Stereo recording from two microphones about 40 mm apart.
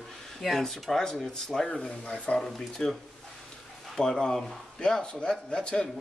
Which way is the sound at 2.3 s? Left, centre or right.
Centre.